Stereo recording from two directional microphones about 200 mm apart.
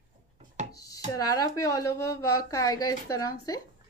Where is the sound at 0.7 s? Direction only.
15° left (ahead or behind).